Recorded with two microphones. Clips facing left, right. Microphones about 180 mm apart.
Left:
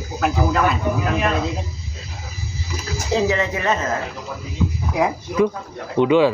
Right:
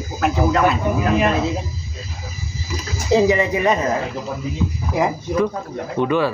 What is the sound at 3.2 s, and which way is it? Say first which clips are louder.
Speech: right 4 dB; 10° right (ahead or behind).